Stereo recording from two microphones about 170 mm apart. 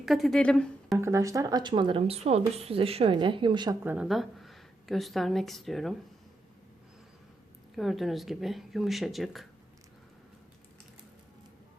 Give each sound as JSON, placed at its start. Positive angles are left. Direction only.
{"t": 0.0, "sound": "speech", "side_deg": 0}
{"t": 0.9, "sound": "speech", "side_deg": -15}
{"t": 3.8, "sound": "a woman's voice", "side_deg": -5}
{"t": 7.8, "sound": "speech", "side_deg": 0}